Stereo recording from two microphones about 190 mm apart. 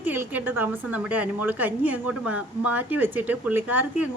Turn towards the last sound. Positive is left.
turn(degrees=-10)  # may be behind; listen again after turning